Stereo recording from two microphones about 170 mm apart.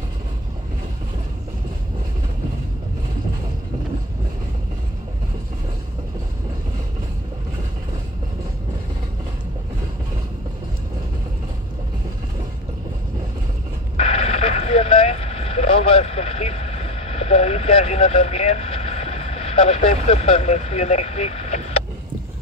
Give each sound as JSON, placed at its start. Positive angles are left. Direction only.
{"t": 13.9, "sound": "vehicle", "side_deg": 35}